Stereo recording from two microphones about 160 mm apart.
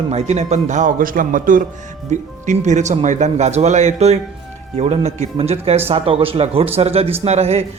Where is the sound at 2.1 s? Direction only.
50° right (ahead or behind).